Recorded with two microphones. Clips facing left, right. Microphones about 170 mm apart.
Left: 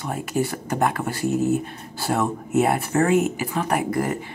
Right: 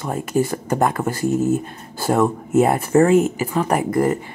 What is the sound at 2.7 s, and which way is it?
Speech, 35° right (ahead or behind).